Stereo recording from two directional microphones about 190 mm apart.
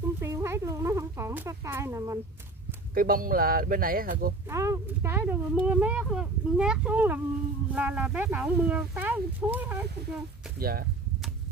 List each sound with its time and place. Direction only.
0.2 s a sound: 15° right (ahead or behind)
2.9 s speech: 50° right (ahead or behind)
4.5 s speech: 15° right (ahead or behind)
10.6 s speech: 50° right (ahead or behind)